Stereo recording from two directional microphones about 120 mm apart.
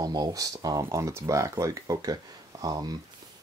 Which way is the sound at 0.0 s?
35° right (ahead or behind).